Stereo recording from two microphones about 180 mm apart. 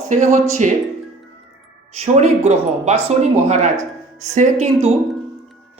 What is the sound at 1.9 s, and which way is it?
Speech, 40° right (ahead or behind).